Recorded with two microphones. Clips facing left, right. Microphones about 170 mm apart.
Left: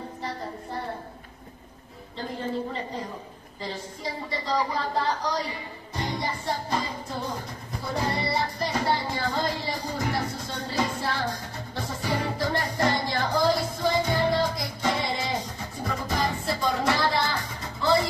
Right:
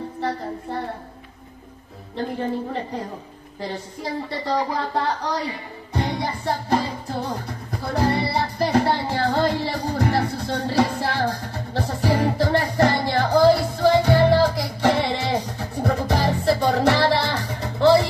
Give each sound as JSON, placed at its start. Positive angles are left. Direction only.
{"t": 4.3, "sound": "a woman's voice", "side_deg": -60}
{"t": 6.0, "sound": "music", "side_deg": -65}